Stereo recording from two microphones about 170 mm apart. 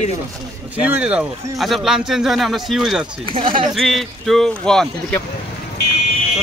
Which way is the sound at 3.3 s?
30° right (ahead or behind).